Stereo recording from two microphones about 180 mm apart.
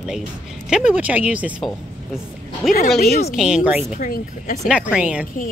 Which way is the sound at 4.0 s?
45° left (ahead or behind).